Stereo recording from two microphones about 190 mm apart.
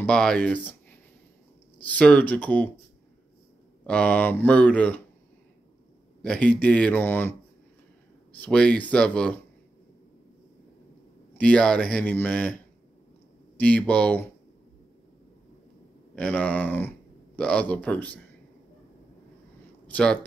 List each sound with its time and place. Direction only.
0.0 s speech: 5° left (ahead or behind)
3.8 s speech: 5° left (ahead or behind)
6.2 s speech: 5° left (ahead or behind)
8.4 s speech: 5° left (ahead or behind)
11.3 s speech: 5° left (ahead or behind)
13.6 s speech: 5° left (ahead or behind)
16.2 s speech: 10° left (ahead or behind)
19.9 s speech: 5° left (ahead or behind)